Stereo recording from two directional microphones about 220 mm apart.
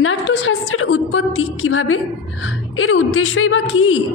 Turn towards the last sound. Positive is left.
turn(degrees=65)  # may be behind; listen again after turning